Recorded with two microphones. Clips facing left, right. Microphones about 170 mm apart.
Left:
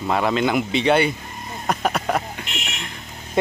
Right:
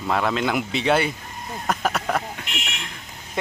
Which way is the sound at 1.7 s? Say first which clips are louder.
Left 2 dB; centre (ahead or behind).